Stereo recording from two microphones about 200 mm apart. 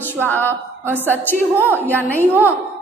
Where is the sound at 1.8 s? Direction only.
10° left (ahead or behind).